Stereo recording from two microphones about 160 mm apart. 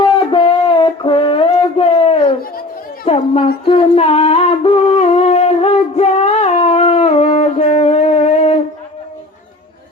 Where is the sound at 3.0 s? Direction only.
35° left (ahead or behind).